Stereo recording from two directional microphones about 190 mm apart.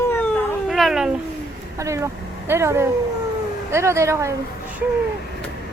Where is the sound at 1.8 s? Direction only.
15° right (ahead or behind).